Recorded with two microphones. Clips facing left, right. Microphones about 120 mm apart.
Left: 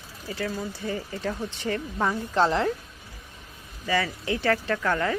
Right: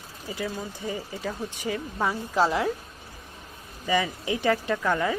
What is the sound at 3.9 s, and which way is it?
Speech, 15° right (ahead or behind).